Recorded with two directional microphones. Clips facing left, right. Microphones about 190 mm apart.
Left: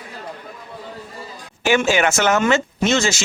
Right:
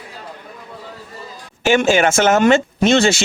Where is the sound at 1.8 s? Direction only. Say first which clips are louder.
Right 5 dB; 50° right (ahead or behind).